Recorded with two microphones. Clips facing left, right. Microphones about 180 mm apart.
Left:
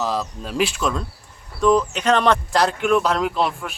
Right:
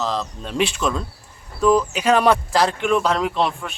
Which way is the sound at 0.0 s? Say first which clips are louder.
Left 1 dB; 10° left (ahead or behind).